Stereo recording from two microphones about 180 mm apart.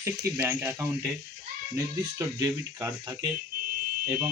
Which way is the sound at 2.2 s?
15° right (ahead or behind).